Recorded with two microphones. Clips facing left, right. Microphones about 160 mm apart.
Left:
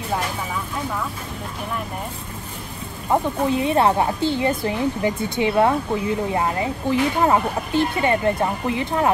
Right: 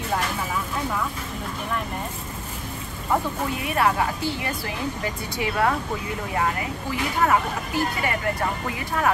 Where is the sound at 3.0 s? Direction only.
25° left (ahead or behind).